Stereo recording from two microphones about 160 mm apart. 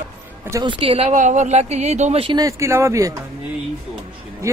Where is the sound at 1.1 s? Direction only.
50° right (ahead or behind).